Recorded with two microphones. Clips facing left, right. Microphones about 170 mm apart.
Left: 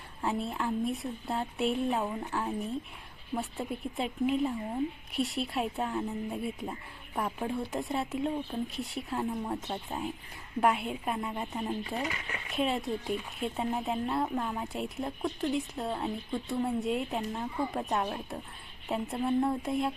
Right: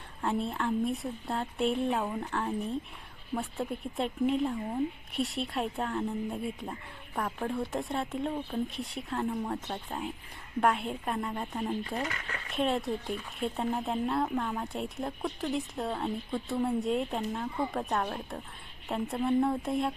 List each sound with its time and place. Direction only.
0.2 s speech: centre (ahead or behind)
12.0 s speech: 15° left (ahead or behind)
12.5 s speech: centre (ahead or behind)